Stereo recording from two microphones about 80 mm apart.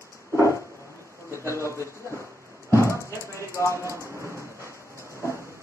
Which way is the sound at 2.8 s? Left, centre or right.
Right.